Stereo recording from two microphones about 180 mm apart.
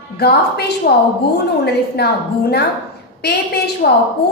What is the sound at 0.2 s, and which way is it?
A woman's voice, 65° left (ahead or behind).